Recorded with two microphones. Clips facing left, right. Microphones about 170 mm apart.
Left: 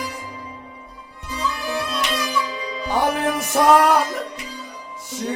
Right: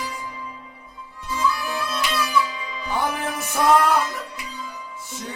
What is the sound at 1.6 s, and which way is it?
Music, 35° left (ahead or behind).